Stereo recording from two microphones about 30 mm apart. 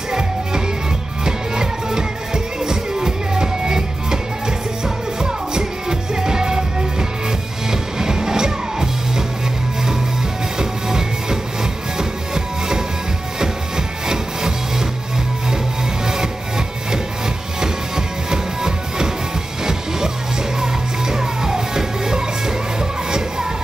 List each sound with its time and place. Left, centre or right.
1.2 s music: right
10.6 s music: right
13.4 s music: centre
16.1 s music: centre